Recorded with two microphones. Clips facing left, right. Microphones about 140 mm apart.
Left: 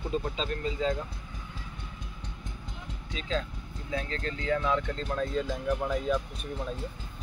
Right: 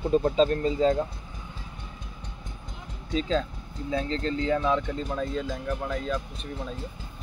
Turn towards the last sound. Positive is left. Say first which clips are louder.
# left 1 dB
turn(degrees=5)  # may be behind; listen again after turning